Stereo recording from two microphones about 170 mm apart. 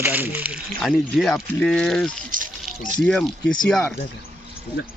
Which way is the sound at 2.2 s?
50° right (ahead or behind).